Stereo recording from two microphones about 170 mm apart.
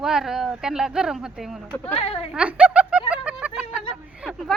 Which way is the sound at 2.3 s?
5° right (ahead or behind).